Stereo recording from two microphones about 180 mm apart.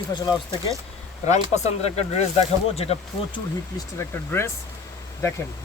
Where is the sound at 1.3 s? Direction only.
40° left (ahead or behind).